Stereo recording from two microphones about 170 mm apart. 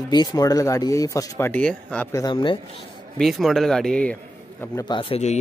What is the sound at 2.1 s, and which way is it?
Speech, 25° left (ahead or behind).